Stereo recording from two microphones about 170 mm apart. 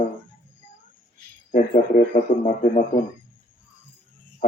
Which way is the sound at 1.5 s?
50° left (ahead or behind).